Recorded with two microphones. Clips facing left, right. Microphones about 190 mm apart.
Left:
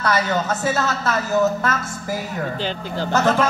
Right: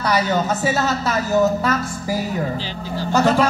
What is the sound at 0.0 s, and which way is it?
Speech, 15° right (ahead or behind).